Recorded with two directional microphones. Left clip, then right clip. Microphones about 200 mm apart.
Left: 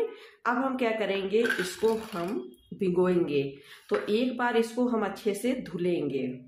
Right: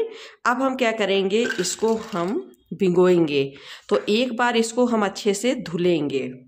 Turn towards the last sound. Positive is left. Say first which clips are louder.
# right 8 dB
turn(degrees=-50)  # may be behind; listen again after turning